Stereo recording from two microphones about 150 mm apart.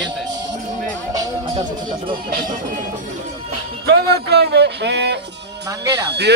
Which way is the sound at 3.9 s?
90° right.